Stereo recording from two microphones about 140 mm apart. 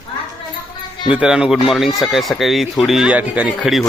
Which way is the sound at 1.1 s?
5° right (ahead or behind).